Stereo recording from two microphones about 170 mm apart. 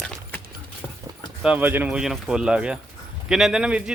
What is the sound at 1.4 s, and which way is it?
Speech, 10° right (ahead or behind).